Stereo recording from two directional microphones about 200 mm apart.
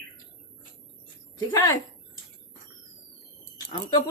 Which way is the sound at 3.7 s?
20° left (ahead or behind).